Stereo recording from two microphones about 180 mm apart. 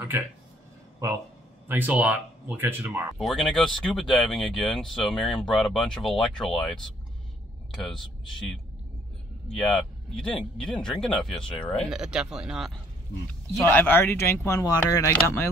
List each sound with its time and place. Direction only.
1.7 s speech: 10° right (ahead or behind)
3.2 s speech: centre (ahead or behind)
9.6 s speech: centre (ahead or behind)
13.3 s speech: 10° left (ahead or behind)